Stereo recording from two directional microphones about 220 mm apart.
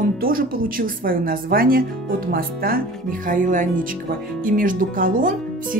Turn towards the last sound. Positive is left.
turn(degrees=-40)  # may be behind; listen again after turning